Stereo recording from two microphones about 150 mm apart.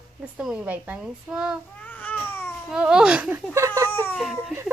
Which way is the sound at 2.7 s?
5° right (ahead or behind).